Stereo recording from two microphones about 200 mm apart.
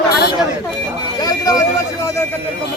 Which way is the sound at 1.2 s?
15° left (ahead or behind).